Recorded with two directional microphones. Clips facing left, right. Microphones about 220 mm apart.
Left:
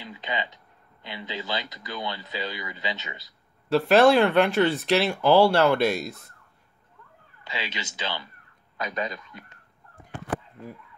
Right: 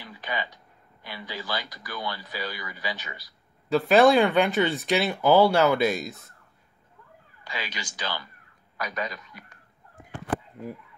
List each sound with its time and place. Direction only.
0.0 s speech: 20° left (ahead or behind)
3.6 s speech: centre (ahead or behind)
7.4 s speech: 25° left (ahead or behind)